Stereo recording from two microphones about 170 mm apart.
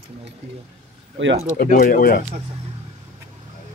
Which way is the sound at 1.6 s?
60° left (ahead or behind).